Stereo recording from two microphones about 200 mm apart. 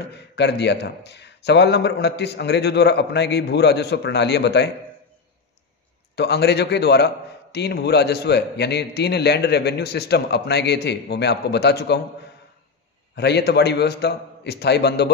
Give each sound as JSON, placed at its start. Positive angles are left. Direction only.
{"t": 0.1, "sound": "speech", "side_deg": 55}
{"t": 6.1, "sound": "speech", "side_deg": 55}
{"t": 13.1, "sound": "speech", "side_deg": 55}